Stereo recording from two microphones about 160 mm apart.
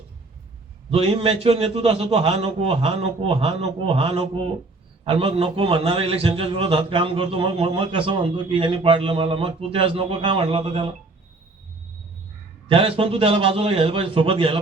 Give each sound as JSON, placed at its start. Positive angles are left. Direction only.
{"t": 0.9, "sound": "a man's voice", "side_deg": -40}
{"t": 12.6, "sound": "a man's voice", "side_deg": -35}